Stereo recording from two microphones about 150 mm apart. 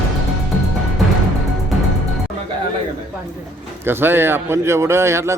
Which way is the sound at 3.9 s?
15° right (ahead or behind).